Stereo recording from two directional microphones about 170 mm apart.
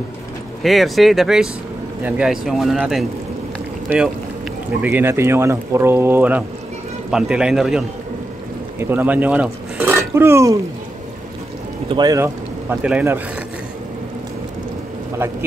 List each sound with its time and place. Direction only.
0.6 s speech: centre (ahead or behind)
4.8 s speech: 15° right (ahead or behind)
11.9 s speech: 25° right (ahead or behind)
12.6 s speech: 10° right (ahead or behind)